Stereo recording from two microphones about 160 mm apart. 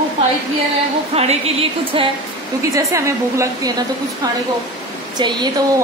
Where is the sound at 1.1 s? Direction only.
40° right (ahead or behind).